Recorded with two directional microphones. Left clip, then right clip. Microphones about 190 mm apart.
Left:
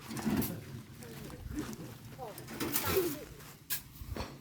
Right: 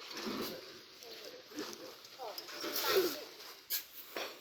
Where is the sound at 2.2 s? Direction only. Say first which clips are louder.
Even; 60° left (ahead or behind).